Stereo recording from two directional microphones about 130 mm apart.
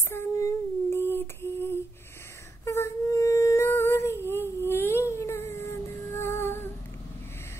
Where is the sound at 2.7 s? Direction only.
25° left (ahead or behind).